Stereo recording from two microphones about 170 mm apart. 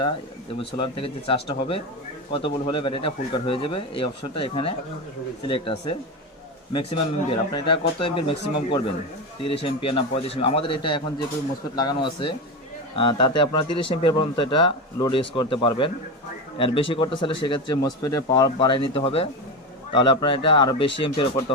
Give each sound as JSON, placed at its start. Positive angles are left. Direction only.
{"t": 0.6, "sound": "speech", "side_deg": 35}
{"t": 7.5, "sound": "a man's voice", "side_deg": 30}